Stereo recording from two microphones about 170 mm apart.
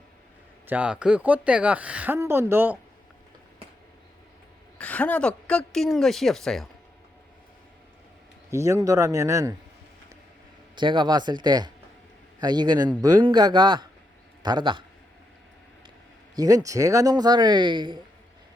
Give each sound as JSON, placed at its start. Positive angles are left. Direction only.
{"t": 0.7, "sound": "speech", "side_deg": -5}
{"t": 4.8, "sound": "a woman's voice", "side_deg": 10}
{"t": 8.4, "sound": "speech", "side_deg": -15}
{"t": 10.8, "sound": "speech", "side_deg": -25}
{"t": 16.3, "sound": "speech", "side_deg": -20}